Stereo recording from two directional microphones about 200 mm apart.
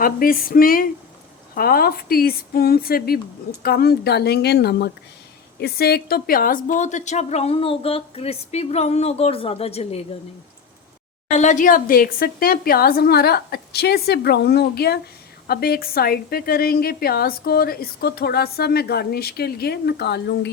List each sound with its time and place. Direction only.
0.0 s a woman's voice: 45° left (ahead or behind); by 10.0 s 30° left (ahead or behind)
11.3 s a woman's voice: 40° left (ahead or behind); by 20.5 s 55° left (ahead or behind)